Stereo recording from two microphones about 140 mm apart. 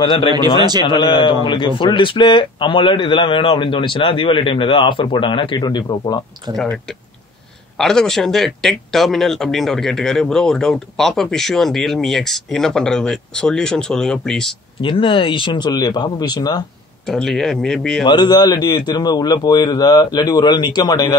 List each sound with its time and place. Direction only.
0.0 s speech: 35° left (ahead or behind)
0.6 s a man's voice: 30° right (ahead or behind)
0.8 s speech: 35° left (ahead or behind)
7.8 s speech: 5° left (ahead or behind)
14.8 s speech: 40° left (ahead or behind)
17.1 s speech: centre (ahead or behind)
18.0 s speech: 30° left (ahead or behind)